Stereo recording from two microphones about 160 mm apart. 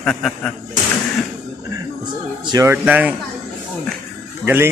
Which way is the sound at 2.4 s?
25° right (ahead or behind).